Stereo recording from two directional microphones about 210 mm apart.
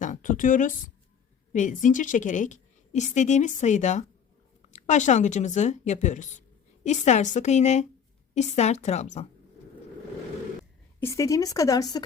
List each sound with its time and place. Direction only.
0.0 s a woman's voice: 40° left (ahead or behind)
11.0 s speech: 15° left (ahead or behind)